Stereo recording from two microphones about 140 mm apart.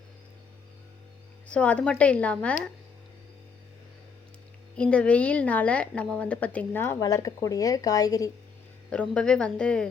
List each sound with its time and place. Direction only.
1.5 s a woman's voice: 10° left (ahead or behind)
4.8 s a woman's voice: 10° left (ahead or behind)
7.0 s a woman's voice: 25° left (ahead or behind)
8.9 s a woman's voice: 10° left (ahead or behind)